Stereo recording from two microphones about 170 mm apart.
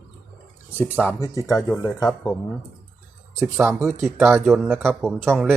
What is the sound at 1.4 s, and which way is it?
Speech, 20° left (ahead or behind).